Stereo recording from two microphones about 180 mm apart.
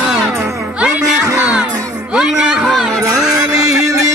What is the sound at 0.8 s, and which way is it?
Music, 5° right (ahead or behind).